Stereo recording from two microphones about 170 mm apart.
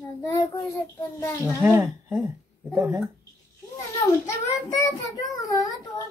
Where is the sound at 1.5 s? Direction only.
10° right (ahead or behind).